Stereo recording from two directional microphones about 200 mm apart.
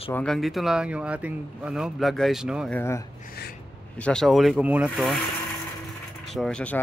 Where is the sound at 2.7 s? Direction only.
15° left (ahead or behind).